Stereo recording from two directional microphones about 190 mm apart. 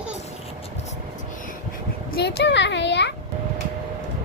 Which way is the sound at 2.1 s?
60° left (ahead or behind).